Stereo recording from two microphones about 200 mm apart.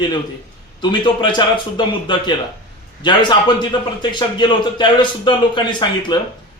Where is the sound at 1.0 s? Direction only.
20° left (ahead or behind).